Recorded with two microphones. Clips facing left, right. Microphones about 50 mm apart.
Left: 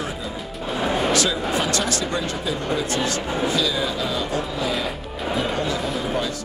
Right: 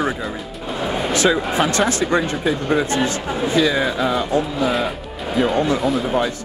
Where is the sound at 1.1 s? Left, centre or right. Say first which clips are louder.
Right 5 dB; right.